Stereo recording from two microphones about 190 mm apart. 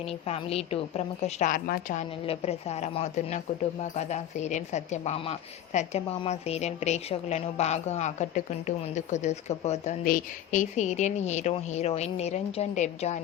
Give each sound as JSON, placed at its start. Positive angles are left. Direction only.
{"t": 0.0, "sound": "a woman's voice", "side_deg": 30}